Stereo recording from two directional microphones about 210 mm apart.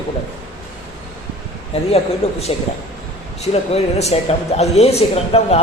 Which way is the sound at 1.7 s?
30° left (ahead or behind).